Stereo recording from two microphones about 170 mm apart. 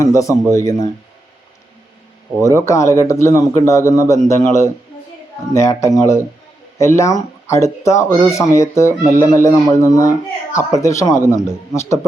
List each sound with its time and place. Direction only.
0.0 s a man's voice: 20° left (ahead or behind)
2.4 s a man's voice: 15° left (ahead or behind)